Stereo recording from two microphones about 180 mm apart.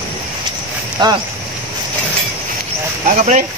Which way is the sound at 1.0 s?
25° right (ahead or behind).